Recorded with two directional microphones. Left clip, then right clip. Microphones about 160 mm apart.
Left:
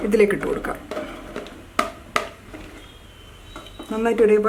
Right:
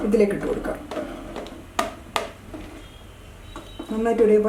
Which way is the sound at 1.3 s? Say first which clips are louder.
Even; centre (ahead or behind).